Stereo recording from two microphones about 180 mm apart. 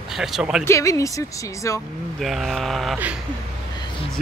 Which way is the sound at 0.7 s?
15° left (ahead or behind).